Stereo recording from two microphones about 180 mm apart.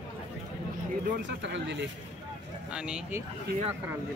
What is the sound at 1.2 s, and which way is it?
Speech, 80° right.